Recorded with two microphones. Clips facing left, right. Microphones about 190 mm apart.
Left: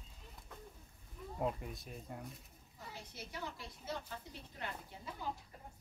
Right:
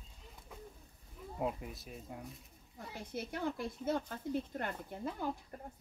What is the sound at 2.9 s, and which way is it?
Speech, 55° right (ahead or behind).